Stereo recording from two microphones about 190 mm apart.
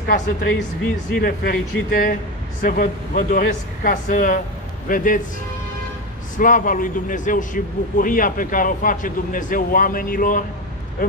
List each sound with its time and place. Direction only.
0.0 s speech: 55° left (ahead or behind)
6.3 s speech: 45° left (ahead or behind)